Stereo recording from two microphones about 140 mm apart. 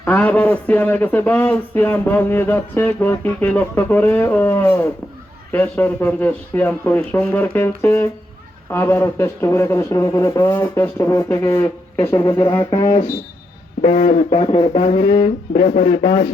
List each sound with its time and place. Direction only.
0.0 s speech: 10° left (ahead or behind); by 12.9 s 30° left (ahead or behind)
13.8 s speech: 50° left (ahead or behind)